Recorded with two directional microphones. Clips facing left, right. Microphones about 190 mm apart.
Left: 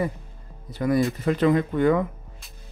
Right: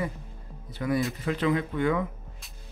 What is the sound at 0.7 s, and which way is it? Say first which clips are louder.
Speech: left 5 dB; 40° left (ahead or behind).